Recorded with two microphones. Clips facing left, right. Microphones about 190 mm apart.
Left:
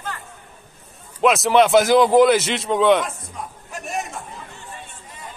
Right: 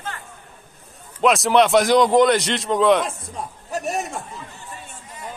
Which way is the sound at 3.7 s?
40° right (ahead or behind).